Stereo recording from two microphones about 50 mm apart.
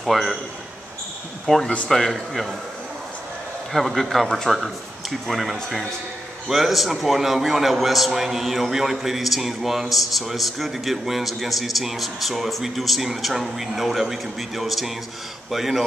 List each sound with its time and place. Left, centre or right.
0.0 s a man's voice: centre
1.4 s a man's voice: centre
3.7 s a man's voice: centre